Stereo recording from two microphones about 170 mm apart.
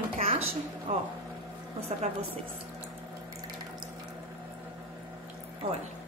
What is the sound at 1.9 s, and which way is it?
Speech, 45° right (ahead or behind).